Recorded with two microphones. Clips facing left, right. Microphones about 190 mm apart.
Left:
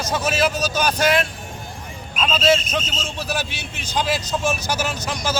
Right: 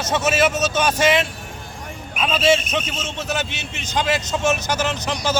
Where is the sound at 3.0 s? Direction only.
20° right (ahead or behind).